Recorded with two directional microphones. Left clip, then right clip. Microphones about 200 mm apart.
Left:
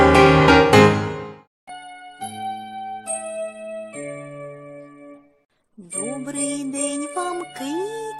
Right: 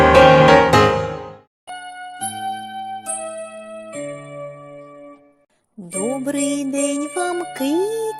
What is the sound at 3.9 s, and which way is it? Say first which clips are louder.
Music: right 3 dB; 40° right (ahead or behind).